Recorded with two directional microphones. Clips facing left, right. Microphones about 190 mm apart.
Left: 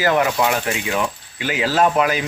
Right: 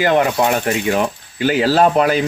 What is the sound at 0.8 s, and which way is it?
Speech, 45° right (ahead or behind).